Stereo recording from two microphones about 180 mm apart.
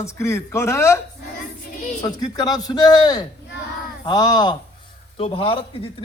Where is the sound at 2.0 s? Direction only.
20° left (ahead or behind).